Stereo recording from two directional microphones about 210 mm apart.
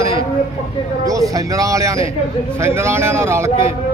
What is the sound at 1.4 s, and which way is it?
Speech, 15° right (ahead or behind).